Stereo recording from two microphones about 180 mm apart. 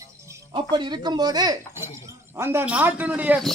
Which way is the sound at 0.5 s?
25° right (ahead or behind).